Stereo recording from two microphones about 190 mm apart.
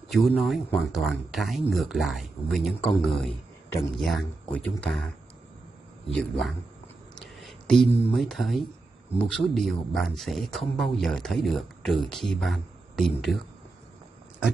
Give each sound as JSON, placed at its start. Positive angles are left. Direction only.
{"t": 0.1, "sound": "speech", "side_deg": 0}
{"t": 6.1, "sound": "speech", "side_deg": 0}
{"t": 7.2, "sound": "a sound", "side_deg": 0}
{"t": 8.1, "sound": "speech", "side_deg": 0}